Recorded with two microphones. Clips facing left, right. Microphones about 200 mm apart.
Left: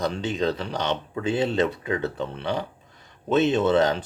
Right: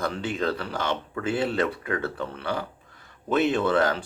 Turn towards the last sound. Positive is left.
turn(degrees=20)  # may be behind; listen again after turning